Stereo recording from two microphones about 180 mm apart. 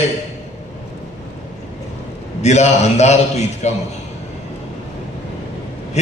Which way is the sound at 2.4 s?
40° left (ahead or behind).